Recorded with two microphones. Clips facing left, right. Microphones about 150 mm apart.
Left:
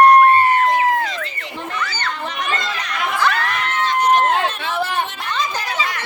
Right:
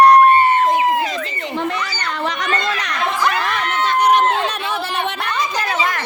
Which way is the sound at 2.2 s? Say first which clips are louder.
Right 6 dB; 85° right.